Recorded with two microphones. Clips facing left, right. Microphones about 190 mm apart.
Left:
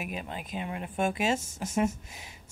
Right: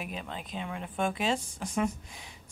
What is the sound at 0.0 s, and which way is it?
Speech, 10° left (ahead or behind).